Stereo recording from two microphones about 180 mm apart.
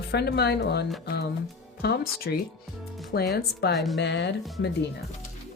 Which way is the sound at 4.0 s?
75° left (ahead or behind).